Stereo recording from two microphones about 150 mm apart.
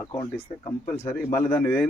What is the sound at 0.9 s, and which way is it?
Speech, 15° left (ahead or behind).